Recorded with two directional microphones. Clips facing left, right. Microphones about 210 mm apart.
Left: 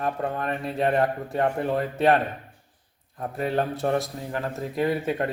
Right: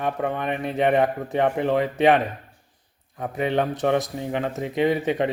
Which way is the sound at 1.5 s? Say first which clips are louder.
Right 4 dB; 90° right.